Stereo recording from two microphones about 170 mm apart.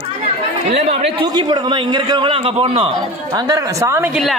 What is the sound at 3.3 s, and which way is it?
Speech, 20° right (ahead or behind).